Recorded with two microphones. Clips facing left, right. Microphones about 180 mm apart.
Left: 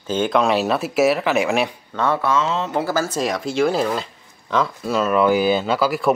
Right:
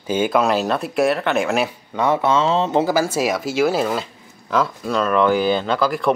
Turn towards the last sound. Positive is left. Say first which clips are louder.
# even
turn(degrees=5)  # may be behind; listen again after turning